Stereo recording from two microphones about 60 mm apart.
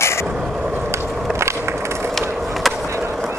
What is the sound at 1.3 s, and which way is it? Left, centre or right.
Skateboard, right.